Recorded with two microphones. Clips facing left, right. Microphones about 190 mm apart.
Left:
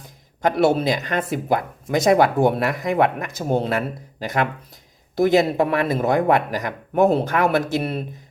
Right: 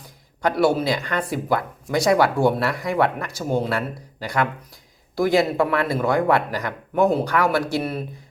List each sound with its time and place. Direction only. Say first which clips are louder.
0.4 s speech: left 1 dB; 25° left (ahead or behind)